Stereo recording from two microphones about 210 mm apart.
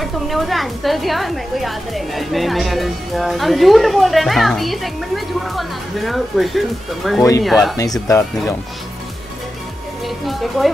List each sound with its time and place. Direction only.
0.0 s a woman's voice: centre (ahead or behind)
7.7 s speech: 15° left (ahead or behind)
10.0 s music: centre (ahead or behind)